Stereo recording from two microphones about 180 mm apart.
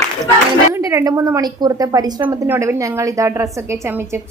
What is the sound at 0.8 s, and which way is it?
A woman's voice, 15° right (ahead or behind).